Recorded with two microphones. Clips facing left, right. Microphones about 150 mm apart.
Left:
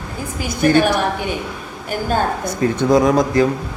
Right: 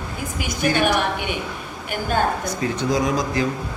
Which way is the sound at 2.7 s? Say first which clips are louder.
Left 9 dB; 55° left (ahead or behind).